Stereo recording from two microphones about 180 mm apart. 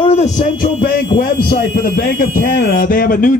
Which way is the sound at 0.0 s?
35° left (ahead or behind).